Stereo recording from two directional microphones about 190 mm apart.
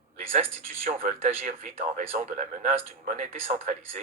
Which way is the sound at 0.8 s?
40° right (ahead or behind).